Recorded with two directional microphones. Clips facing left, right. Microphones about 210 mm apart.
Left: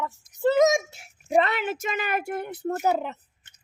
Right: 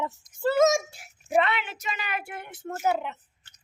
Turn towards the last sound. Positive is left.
turn(degrees=40)  # may be behind; listen again after turning